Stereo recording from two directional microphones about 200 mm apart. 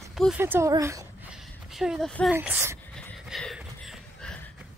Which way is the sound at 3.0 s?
Centre (ahead or behind).